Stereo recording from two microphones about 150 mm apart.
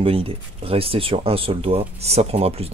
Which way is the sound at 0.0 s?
40° right (ahead or behind).